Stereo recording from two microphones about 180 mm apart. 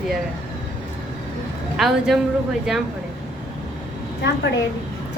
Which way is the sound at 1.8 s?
Centre (ahead or behind).